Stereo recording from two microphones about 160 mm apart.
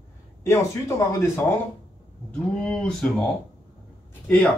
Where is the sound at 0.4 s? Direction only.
15° left (ahead or behind).